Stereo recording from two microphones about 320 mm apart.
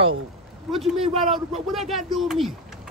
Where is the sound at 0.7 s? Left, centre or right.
Centre.